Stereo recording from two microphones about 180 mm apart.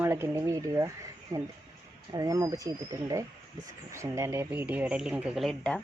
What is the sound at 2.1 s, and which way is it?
Speech, 20° right (ahead or behind).